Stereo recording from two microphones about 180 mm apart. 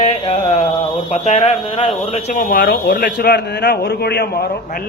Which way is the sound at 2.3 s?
55° left (ahead or behind).